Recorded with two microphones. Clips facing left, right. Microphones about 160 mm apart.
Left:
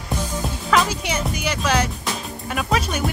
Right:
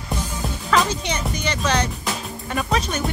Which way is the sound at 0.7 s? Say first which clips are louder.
Even; 5° left (ahead or behind).